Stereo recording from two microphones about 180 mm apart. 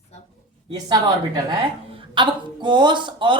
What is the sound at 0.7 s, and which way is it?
A woman's voice, 25° right (ahead or behind).